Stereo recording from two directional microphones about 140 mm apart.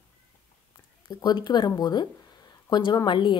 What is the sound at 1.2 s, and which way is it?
A woman's voice, 30° left (ahead or behind).